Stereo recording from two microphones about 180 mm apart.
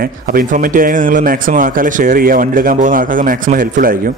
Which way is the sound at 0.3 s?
50° right (ahead or behind).